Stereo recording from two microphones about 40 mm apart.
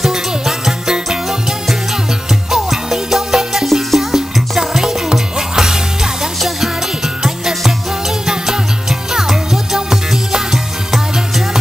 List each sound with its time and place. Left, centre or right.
0.0 s music: centre
2.5 s music: centre
7.2 s music: centre
9.1 s music: centre